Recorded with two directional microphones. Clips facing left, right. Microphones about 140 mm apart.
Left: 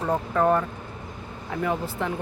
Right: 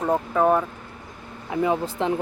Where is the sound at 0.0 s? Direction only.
10° right (ahead or behind).